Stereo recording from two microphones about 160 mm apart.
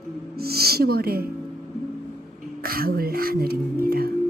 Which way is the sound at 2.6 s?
70° right (ahead or behind).